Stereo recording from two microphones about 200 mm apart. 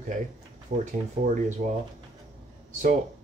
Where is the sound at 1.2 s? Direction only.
35° right (ahead or behind).